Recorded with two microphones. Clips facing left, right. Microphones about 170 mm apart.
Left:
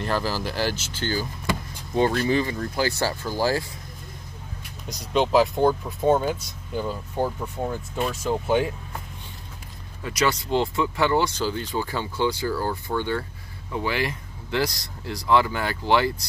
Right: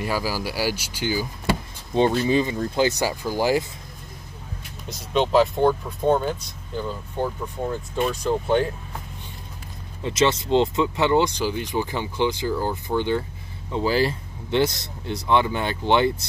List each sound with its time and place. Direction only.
0.0 s speech: 10° right (ahead or behind)
4.8 s speech: centre (ahead or behind)
10.0 s speech: 25° right (ahead or behind)
13.7 s speech: 30° right (ahead or behind)